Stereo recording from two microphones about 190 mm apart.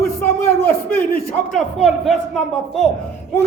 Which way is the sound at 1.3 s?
Centre (ahead or behind).